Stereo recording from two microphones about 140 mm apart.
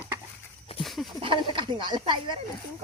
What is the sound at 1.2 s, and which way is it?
Speech, 35° right (ahead or behind).